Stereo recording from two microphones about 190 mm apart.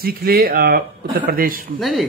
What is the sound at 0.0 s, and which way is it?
A man's voice, 55° right (ahead or behind).